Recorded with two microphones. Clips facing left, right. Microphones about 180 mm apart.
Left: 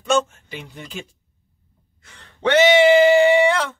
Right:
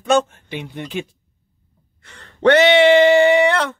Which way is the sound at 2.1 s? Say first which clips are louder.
Right 7 dB; 65° right (ahead or behind).